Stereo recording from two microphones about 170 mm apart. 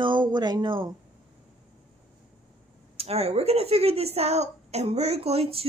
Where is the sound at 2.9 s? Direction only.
35° right (ahead or behind).